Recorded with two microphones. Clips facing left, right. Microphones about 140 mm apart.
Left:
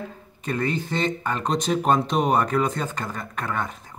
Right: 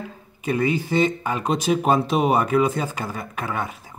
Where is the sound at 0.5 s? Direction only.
10° right (ahead or behind).